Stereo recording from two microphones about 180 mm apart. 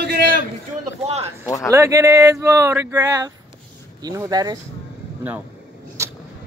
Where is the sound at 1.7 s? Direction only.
20° right (ahead or behind).